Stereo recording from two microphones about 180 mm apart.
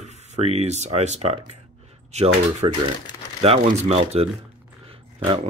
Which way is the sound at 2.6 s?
25° right (ahead or behind).